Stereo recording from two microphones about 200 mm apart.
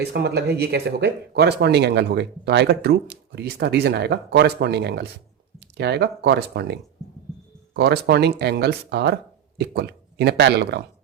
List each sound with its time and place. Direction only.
0.0 s speech: 55° right (ahead or behind)